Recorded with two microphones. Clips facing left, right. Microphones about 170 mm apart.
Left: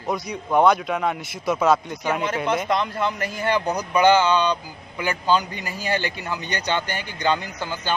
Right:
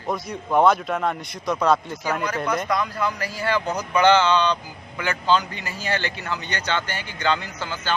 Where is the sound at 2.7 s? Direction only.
25° left (ahead or behind).